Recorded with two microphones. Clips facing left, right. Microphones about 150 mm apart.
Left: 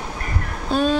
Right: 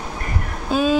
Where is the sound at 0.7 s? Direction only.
5° right (ahead or behind).